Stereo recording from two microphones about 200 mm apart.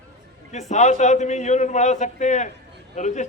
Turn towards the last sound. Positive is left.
turn(degrees=40)  # may be behind; listen again after turning